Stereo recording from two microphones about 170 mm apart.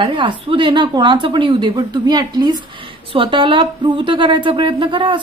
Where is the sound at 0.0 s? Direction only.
30° right (ahead or behind).